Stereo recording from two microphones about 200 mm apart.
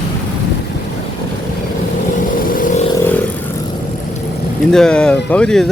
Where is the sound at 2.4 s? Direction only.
40° left (ahead or behind).